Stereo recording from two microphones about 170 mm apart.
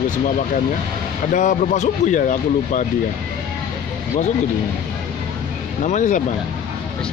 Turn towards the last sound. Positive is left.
turn(degrees=45)  # may be behind; listen again after turning